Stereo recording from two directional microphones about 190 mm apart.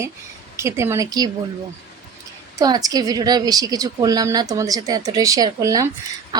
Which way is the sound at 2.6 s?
20° right (ahead or behind).